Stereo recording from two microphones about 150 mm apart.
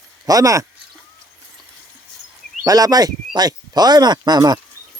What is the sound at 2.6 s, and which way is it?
Speech, 25° right (ahead or behind).